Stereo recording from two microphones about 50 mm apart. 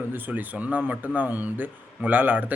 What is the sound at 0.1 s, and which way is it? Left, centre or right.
Speech, right.